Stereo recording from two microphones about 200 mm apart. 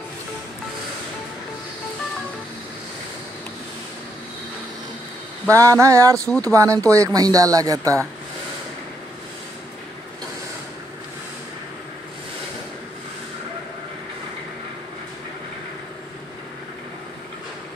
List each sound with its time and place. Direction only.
5.5 s speech: 15° right (ahead or behind)